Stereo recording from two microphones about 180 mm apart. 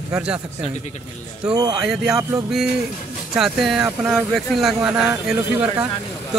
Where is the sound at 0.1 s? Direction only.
5° right (ahead or behind).